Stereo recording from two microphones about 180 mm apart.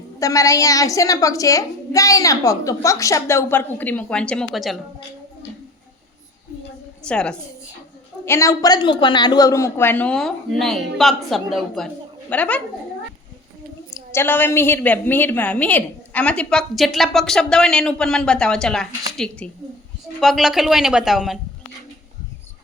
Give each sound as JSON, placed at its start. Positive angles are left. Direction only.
{"t": 0.2, "sound": "a child's voice", "side_deg": 20}
{"t": 7.1, "sound": "a woman's voice", "side_deg": 5}
{"t": 8.2, "sound": "a child's voice", "side_deg": 15}
{"t": 13.9, "sound": "a woman's voice", "side_deg": 15}